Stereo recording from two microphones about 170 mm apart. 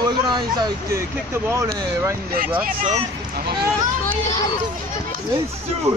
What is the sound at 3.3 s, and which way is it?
Speech, 65° right (ahead or behind).